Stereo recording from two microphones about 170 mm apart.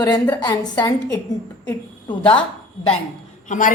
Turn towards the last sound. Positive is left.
turn(degrees=45)  # may be behind; listen again after turning